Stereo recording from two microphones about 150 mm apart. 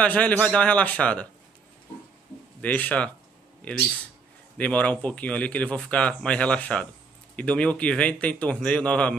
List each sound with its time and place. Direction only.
0.0 s speech: 10° left (ahead or behind)
2.6 s speech: 10° left (ahead or behind)
4.6 s speech: 10° left (ahead or behind)